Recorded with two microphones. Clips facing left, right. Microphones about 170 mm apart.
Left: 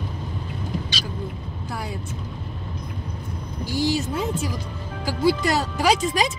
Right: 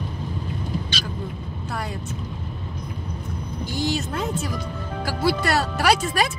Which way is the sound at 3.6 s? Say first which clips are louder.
Left 3 dB; 10° left (ahead or behind).